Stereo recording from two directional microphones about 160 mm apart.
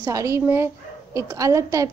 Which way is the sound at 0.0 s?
20° right (ahead or behind).